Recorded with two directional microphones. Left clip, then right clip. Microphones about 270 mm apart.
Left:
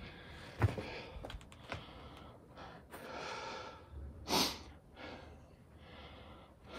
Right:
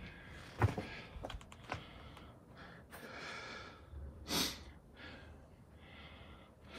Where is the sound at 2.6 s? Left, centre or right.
Centre.